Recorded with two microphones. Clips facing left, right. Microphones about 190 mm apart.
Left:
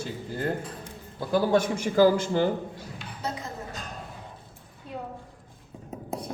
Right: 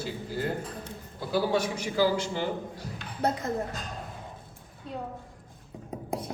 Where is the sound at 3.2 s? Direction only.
55° right (ahead or behind).